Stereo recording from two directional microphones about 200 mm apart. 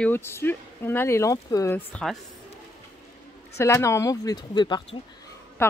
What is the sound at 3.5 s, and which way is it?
A woman's voice, 15° left (ahead or behind).